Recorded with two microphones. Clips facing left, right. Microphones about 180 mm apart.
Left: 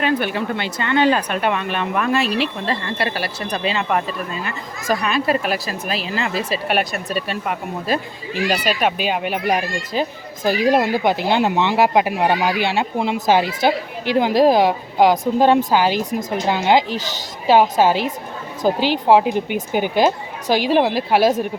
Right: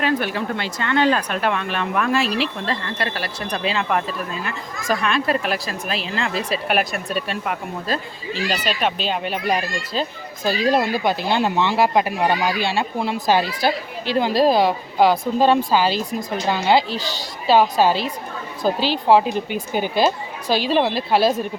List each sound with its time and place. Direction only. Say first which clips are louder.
0.0 s speech: left 2 dB; centre (ahead or behind)
7.9 s speech: left 4 dB; 15° left (ahead or behind)